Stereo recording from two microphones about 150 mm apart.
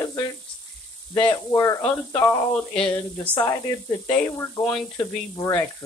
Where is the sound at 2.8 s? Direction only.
10° left (ahead or behind).